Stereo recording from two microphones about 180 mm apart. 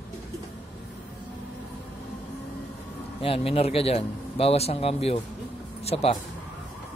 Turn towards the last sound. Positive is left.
turn(degrees=35)  # may be behind; listen again after turning